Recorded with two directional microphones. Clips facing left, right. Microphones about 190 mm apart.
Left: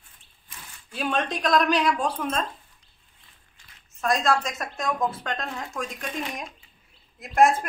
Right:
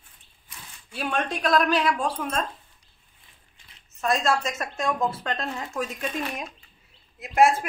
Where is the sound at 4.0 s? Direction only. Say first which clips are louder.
Left 1 dB; centre (ahead or behind).